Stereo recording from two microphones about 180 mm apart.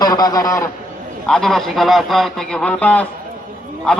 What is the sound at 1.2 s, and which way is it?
A man's voice, 5° left (ahead or behind).